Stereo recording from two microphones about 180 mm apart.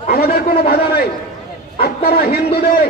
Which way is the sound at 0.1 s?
60° left (ahead or behind).